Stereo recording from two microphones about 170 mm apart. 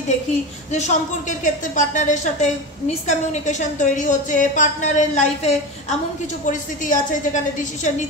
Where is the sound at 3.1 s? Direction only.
45° left (ahead or behind).